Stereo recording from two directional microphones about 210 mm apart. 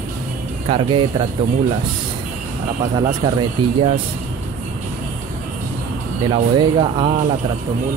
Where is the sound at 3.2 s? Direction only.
20° right (ahead or behind).